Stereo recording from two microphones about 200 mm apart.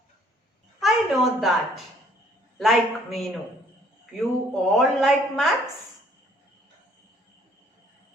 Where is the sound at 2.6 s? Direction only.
Centre (ahead or behind).